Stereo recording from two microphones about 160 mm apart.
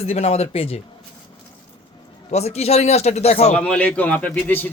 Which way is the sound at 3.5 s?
10° left (ahead or behind).